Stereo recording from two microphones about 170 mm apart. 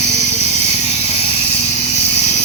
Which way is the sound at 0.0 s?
40° left (ahead or behind).